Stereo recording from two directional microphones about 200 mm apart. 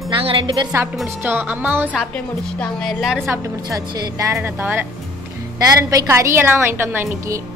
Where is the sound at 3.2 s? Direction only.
15° right (ahead or behind).